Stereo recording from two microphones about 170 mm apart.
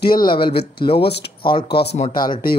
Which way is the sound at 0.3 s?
30° left (ahead or behind).